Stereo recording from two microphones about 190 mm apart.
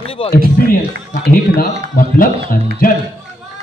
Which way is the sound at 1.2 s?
50° left (ahead or behind).